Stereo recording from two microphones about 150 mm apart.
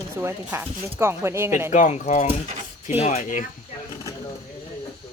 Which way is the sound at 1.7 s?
50° left (ahead or behind).